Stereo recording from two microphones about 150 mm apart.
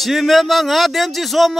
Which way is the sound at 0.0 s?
Centre (ahead or behind).